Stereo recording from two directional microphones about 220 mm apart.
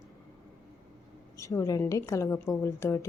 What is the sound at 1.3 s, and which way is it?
A woman's voice, 15° left (ahead or behind).